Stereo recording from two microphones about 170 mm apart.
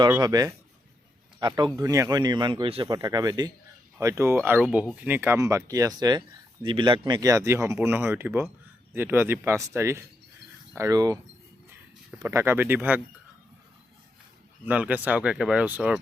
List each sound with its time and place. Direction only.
0.2 s speech: 20° right (ahead or behind)
12.2 s speech: 15° right (ahead or behind)
14.6 s speech: 10° right (ahead or behind)